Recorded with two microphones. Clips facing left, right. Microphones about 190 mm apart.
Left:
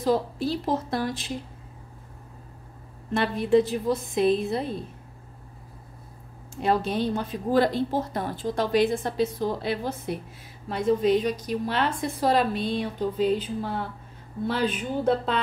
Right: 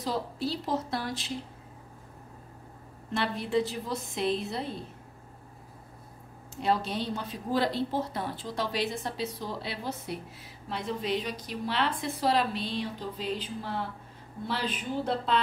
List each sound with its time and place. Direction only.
0.0 s a woman's voice: 50° left (ahead or behind)
3.1 s a woman's voice: 50° left (ahead or behind)
6.6 s a woman's voice: 50° left (ahead or behind)